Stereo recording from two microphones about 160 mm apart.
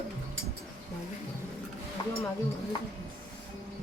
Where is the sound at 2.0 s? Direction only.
30° left (ahead or behind).